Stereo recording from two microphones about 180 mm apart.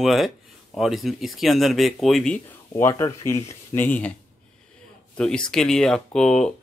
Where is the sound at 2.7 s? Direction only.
15° left (ahead or behind).